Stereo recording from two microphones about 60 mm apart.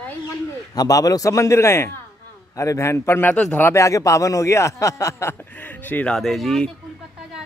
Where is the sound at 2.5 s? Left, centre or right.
Left.